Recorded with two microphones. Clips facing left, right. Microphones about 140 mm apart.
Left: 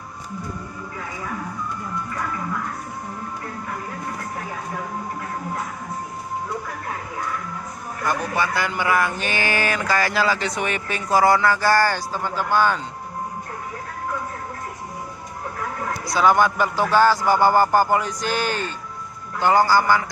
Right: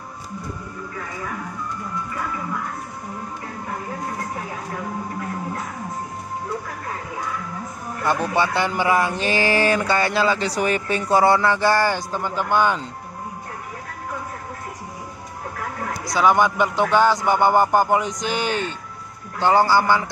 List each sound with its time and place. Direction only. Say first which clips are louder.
8.0 s a man's voice: right 3 dB; 30° right (ahead or behind)
16.1 s a man's voice: even; 15° right (ahead or behind)